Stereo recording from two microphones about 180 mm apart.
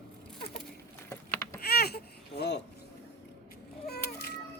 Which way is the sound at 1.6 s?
60° left (ahead or behind).